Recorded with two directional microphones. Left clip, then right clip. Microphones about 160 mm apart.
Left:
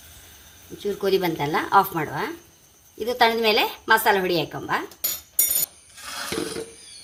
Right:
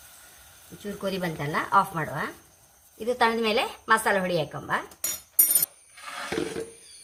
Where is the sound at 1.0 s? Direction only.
45° left (ahead or behind).